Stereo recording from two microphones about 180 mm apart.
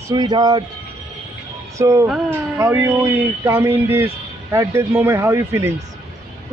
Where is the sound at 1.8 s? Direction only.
15° right (ahead or behind).